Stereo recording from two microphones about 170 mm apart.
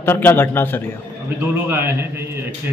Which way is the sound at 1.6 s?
10° right (ahead or behind).